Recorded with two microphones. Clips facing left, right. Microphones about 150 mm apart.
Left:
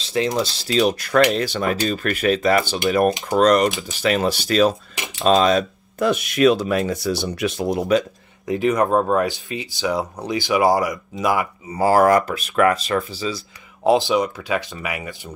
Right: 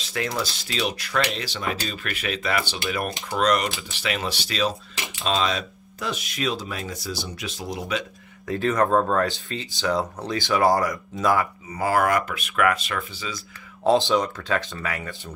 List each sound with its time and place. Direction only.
0.0 s speech: 25° left (ahead or behind); by 8.0 s 50° left (ahead or behind)
8.5 s speech: 15° left (ahead or behind)
11.7 s speech: 35° left (ahead or behind)
13.8 s speech: 10° left (ahead or behind)